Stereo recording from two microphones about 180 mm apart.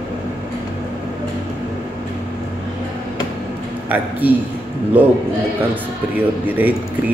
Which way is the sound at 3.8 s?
10° right (ahead or behind).